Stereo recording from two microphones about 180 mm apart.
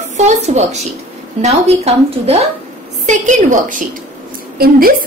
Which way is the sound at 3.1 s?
45° right (ahead or behind).